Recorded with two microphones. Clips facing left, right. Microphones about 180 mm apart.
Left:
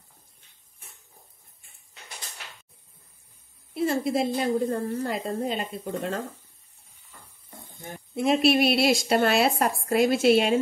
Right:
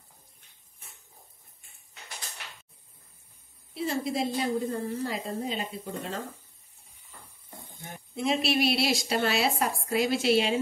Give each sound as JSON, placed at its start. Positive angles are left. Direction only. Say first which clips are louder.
{"t": 3.7, "sound": "a woman's voice", "louder": "left 5 dB", "side_deg": 55}
{"t": 8.2, "sound": "a woman's voice", "louder": "left 5 dB", "side_deg": 55}